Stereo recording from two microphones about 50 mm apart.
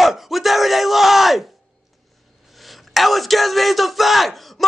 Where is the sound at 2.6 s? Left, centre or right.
Centre.